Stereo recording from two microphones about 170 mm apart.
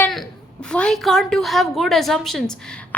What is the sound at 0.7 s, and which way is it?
A woman's voice, 5° left (ahead or behind).